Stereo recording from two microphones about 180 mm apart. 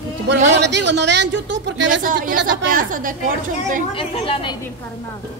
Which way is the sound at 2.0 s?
50° right (ahead or behind).